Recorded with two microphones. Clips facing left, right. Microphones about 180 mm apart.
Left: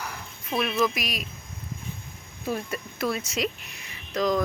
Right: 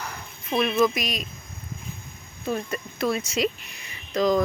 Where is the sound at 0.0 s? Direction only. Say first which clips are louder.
Even; 5° left (ahead or behind).